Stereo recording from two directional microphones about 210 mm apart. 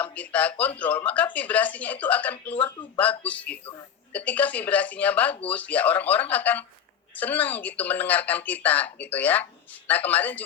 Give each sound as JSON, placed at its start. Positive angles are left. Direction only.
{"t": 0.0, "sound": "a woman's voice", "side_deg": 5}
{"t": 2.6, "sound": "speech", "side_deg": 20}
{"t": 3.0, "sound": "a woman's voice", "side_deg": 5}